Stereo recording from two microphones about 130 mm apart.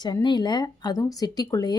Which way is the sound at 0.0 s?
35° left (ahead or behind).